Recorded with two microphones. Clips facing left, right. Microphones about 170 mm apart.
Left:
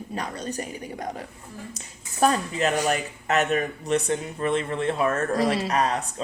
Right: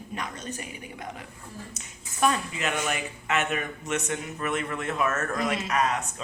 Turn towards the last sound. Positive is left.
turn(degrees=35)  # may be behind; listen again after turning